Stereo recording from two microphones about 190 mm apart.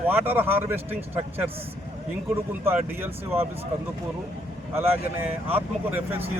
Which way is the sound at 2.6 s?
10° right (ahead or behind).